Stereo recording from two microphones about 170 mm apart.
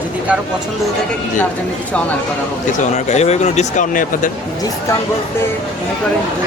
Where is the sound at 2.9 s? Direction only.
40° left (ahead or behind).